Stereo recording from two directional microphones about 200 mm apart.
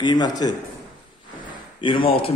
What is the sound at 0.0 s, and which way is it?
Speech, 20° left (ahead or behind).